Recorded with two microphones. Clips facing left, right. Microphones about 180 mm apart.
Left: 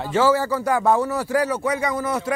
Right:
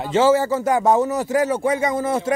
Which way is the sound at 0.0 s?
20° right (ahead or behind).